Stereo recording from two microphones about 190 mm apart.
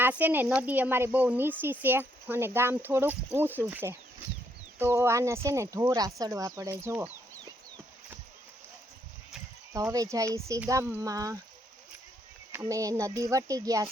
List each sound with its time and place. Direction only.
0.0 s speech: 10° right (ahead or behind)
9.7 s speech: 15° right (ahead or behind)
12.5 s speech: 15° right (ahead or behind)